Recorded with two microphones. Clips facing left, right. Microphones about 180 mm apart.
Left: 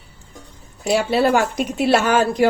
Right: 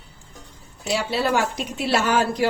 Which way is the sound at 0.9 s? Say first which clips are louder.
Left 6 dB; 50° left (ahead or behind).